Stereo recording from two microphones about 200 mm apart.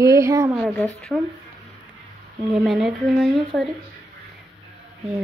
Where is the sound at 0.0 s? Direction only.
15° right (ahead or behind).